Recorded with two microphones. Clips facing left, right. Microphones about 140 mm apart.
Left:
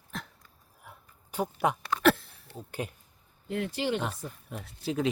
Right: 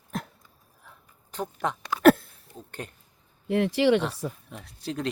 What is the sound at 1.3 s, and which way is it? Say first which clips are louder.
Speech: left 2 dB; 10° left (ahead or behind).